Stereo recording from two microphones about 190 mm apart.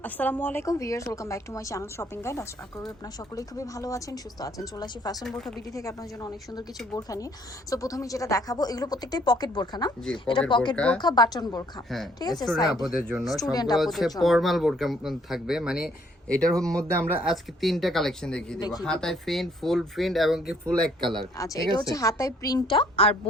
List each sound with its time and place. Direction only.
0.0 s a woman's voice: 10° left (ahead or behind)
5.2 s speech: centre (ahead or behind)
5.7 s a woman's voice: 15° left (ahead or behind)
10.8 s speech: 5° left (ahead or behind)
11.0 s speech: 20° left (ahead or behind)
13.1 s speech: centre (ahead or behind)
13.4 s speech: 20° left (ahead or behind)
13.7 s speech: centre (ahead or behind)
17.1 s speech: 5° right (ahead or behind)
21.3 s a woman's voice: 15° left (ahead or behind)